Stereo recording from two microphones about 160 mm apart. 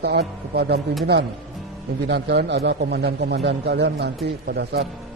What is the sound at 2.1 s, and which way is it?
A man's voice, 90° right.